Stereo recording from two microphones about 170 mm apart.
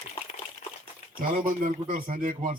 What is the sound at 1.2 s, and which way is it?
A man's voice, 50° right (ahead or behind).